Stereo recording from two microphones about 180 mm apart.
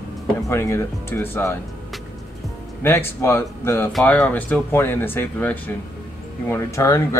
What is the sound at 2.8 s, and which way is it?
Speech, 15° left (ahead or behind).